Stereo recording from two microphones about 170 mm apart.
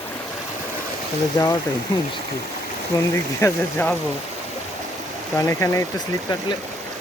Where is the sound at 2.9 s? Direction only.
20° left (ahead or behind).